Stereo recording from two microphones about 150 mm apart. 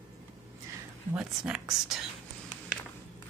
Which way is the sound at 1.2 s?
5° right (ahead or behind).